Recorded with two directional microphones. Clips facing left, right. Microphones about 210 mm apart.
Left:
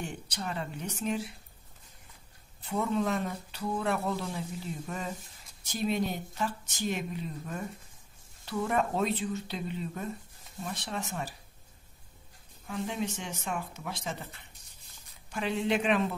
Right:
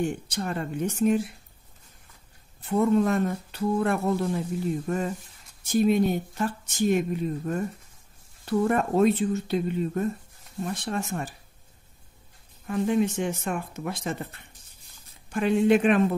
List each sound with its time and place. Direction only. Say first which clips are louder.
0.0 s speech: right 9 dB; 50° right (ahead or behind)
2.6 s speech: right 8 dB; 50° right (ahead or behind)
12.6 s speech: right 10 dB; 55° right (ahead or behind)